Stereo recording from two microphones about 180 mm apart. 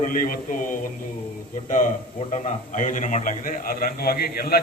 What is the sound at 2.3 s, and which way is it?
A man's voice, 45° left (ahead or behind).